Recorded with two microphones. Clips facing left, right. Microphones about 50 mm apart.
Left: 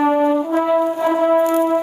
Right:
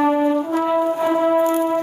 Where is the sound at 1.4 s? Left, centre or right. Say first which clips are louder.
Left 2 dB; left.